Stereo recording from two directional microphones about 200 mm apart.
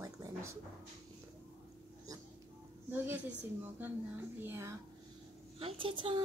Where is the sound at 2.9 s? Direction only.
10° right (ahead or behind).